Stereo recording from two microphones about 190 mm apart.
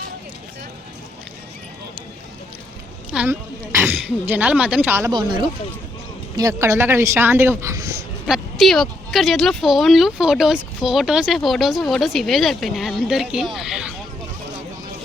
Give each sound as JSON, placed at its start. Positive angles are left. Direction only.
{"t": 3.1, "sound": "speech", "side_deg": -5}
{"t": 5.1, "sound": "speech", "side_deg": -25}
{"t": 8.3, "sound": "speech", "side_deg": 0}